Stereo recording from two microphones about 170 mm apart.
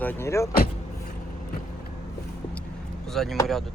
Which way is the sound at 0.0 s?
10° left (ahead or behind).